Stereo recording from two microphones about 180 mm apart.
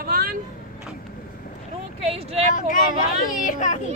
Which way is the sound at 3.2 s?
50° left (ahead or behind).